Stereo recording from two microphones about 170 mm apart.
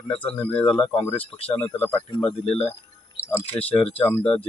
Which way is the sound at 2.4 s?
35° left (ahead or behind).